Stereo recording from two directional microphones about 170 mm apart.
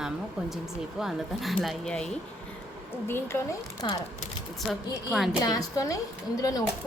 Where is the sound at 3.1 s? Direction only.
15° left (ahead or behind).